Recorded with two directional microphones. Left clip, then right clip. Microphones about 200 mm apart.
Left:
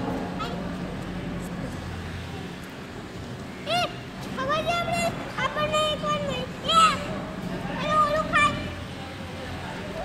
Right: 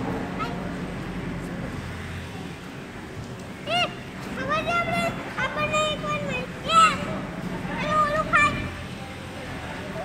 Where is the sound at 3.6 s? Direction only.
25° left (ahead or behind).